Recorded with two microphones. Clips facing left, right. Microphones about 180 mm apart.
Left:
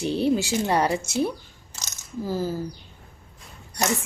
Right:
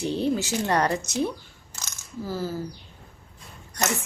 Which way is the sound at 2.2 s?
15° left (ahead or behind).